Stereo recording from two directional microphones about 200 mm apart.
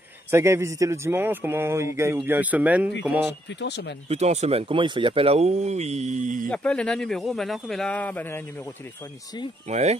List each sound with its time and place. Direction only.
0.3 s a man's voice: 15° right (ahead or behind)
3.4 s speech: 60° left (ahead or behind)
4.1 s speech: 35° right (ahead or behind)
6.5 s speech: 5° left (ahead or behind)
9.7 s speech: 35° right (ahead or behind)